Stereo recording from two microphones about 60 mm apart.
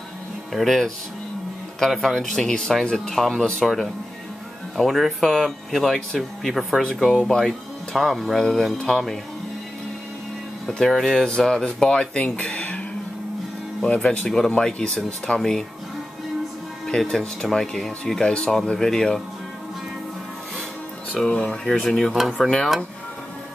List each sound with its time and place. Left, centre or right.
0.5 s speech: centre
2.0 s speech: centre
10.9 s speech: centre
13.8 s speech: centre
16.8 s speech: centre
21.1 s speech: centre